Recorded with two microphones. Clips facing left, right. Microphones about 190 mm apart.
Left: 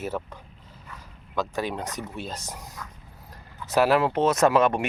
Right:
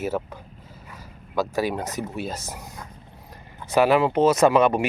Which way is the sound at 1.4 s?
5° right (ahead or behind).